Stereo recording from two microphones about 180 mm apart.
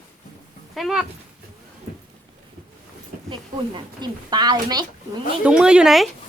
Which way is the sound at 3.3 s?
25° right (ahead or behind).